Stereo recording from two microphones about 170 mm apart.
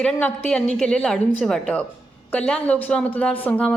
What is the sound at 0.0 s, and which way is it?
A woman's voice, 5° left (ahead or behind).